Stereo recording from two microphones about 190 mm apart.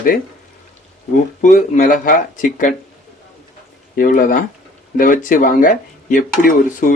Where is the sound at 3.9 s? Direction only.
45° left (ahead or behind).